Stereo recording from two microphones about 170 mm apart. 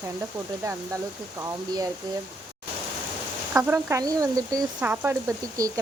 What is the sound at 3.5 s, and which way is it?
Speech, 10° right (ahead or behind).